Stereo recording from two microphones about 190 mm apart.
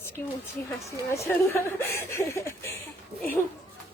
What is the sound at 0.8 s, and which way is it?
Speech, 15° left (ahead or behind).